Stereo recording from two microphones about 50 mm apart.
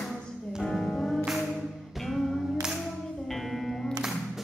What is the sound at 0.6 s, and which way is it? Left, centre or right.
Music, centre.